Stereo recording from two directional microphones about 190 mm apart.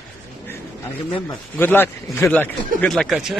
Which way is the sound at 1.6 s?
10° left (ahead or behind).